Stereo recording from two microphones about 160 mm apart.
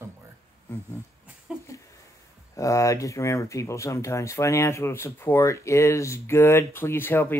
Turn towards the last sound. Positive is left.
turn(degrees=15)  # may be behind; listen again after turning